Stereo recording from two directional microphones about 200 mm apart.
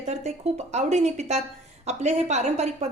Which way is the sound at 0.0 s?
35° right (ahead or behind).